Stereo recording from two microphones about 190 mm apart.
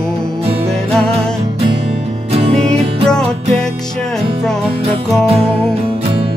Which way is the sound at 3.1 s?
5° left (ahead or behind).